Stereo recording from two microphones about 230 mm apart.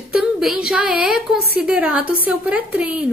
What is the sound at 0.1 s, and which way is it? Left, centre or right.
A woman's voice, centre.